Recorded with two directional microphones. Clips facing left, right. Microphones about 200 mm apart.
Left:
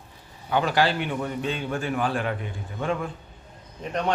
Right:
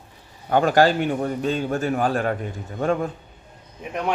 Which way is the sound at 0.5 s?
45° right (ahead or behind).